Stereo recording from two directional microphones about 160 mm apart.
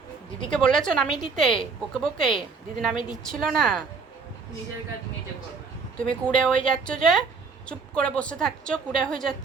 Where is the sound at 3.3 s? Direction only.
5° left (ahead or behind).